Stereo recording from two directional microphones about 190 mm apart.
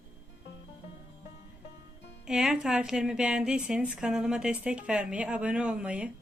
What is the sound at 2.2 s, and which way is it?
A woman's voice, 5° right (ahead or behind).